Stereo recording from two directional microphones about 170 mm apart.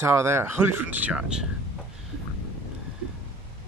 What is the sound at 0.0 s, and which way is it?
Speech, 15° right (ahead or behind).